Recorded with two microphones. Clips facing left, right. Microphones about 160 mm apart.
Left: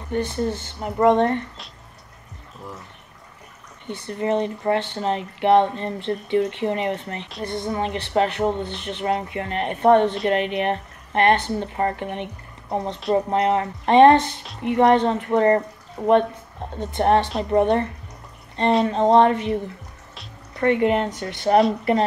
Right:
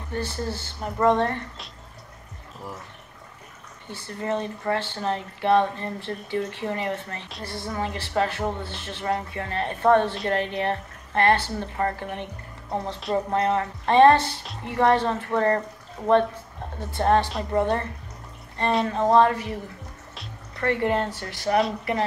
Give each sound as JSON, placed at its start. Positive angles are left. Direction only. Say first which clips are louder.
{"t": 0.1, "sound": "a woman's voice", "louder": "left 6 dB", "side_deg": 20}
{"t": 4.1, "sound": "a woman's voice", "louder": "left 5 dB", "side_deg": 20}
{"t": 16.7, "sound": "a woman's voice", "louder": "left 3 dB", "side_deg": 20}
{"t": 18.9, "sound": "a woman's voice", "louder": "left 2 dB", "side_deg": 20}
{"t": 20.5, "sound": "a woman's voice", "louder": "left 5 dB", "side_deg": 20}